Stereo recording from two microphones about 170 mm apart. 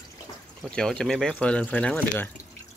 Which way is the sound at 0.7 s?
5° left (ahead or behind).